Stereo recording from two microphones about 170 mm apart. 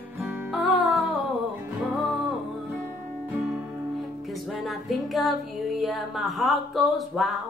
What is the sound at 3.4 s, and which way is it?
Music, 5° right (ahead or behind).